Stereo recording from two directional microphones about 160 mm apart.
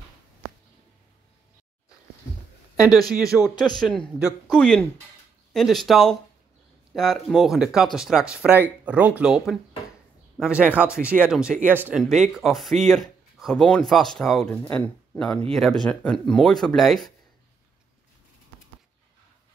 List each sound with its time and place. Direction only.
2.8 s speech: 25° left (ahead or behind)
3.1 s speech: 5° right (ahead or behind)